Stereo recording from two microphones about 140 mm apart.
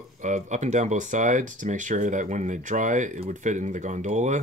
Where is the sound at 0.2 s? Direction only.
60° right (ahead or behind).